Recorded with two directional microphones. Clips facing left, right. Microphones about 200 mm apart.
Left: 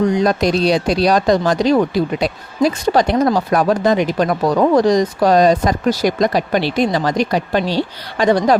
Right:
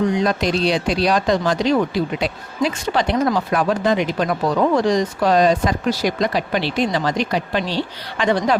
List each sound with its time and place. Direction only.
0.2 s speech: 40° left (ahead or behind)